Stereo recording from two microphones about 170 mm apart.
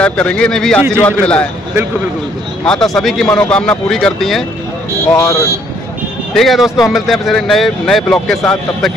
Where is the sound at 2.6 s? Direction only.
5° left (ahead or behind).